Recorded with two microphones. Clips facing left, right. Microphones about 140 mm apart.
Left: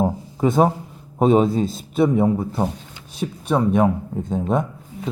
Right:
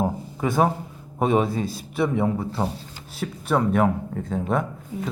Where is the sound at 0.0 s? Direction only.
20° left (ahead or behind).